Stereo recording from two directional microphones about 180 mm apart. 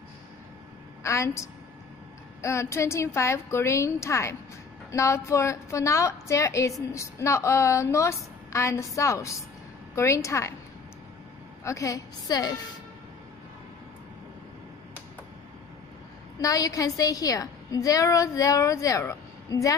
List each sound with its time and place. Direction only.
1.0 s a woman's voice: 15° left (ahead or behind)
2.4 s a woman's voice: 15° left (ahead or behind)
11.6 s a woman's voice: 15° left (ahead or behind)
16.3 s a woman's voice: 20° left (ahead or behind)